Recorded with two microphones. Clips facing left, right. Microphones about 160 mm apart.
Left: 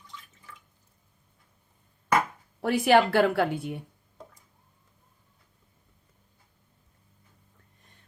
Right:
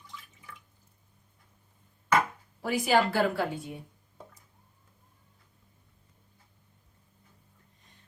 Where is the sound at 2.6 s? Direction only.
65° left (ahead or behind).